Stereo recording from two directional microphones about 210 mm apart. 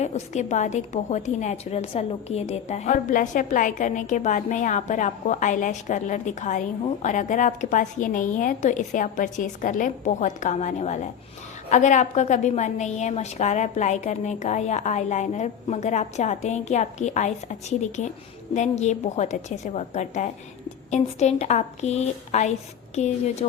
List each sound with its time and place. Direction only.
0.0 s a woman's voice: 35° left (ahead or behind)